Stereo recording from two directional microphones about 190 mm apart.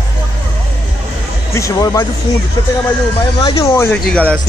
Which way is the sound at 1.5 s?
15° left (ahead or behind).